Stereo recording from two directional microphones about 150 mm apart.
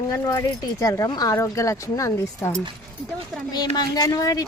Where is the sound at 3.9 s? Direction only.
25° left (ahead or behind).